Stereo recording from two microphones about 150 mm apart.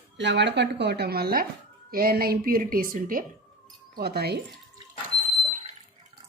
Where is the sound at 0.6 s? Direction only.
90° right.